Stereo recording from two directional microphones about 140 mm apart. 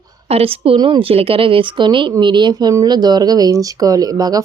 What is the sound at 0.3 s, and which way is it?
A woman's voice, 45° right (ahead or behind).